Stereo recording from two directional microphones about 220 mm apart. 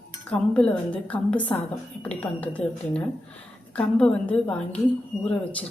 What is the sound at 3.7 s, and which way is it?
A woman's voice, 5° left (ahead or behind).